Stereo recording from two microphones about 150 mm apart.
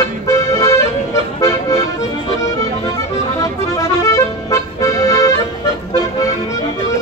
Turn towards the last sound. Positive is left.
turn(degrees=25)  # may be behind; listen again after turning